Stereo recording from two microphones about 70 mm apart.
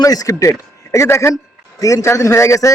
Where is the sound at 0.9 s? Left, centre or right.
Left.